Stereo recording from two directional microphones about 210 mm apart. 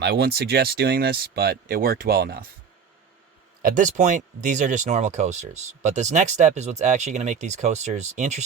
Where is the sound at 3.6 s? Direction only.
35° right (ahead or behind).